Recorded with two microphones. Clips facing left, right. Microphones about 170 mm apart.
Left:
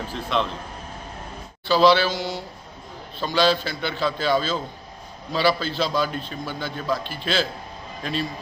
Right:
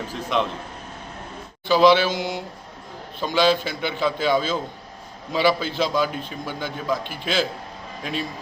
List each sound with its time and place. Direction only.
0.1 s a man's voice: 10° right (ahead or behind)
1.6 s a man's voice: 15° right (ahead or behind)